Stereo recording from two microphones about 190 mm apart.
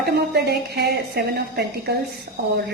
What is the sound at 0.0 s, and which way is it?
A woman's voice, 60° right (ahead or behind).